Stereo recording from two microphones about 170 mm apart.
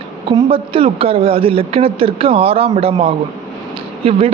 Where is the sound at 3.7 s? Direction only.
35° right (ahead or behind).